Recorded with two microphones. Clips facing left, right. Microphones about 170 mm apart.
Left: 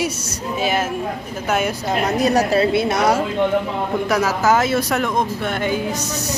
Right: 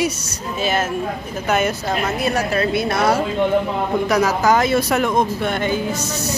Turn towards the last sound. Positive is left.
turn(degrees=10)  # may be behind; listen again after turning